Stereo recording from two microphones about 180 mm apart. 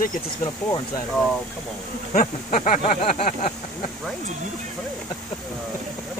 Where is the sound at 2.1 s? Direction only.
45° left (ahead or behind).